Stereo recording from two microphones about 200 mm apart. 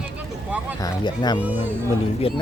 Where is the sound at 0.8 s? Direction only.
20° left (ahead or behind).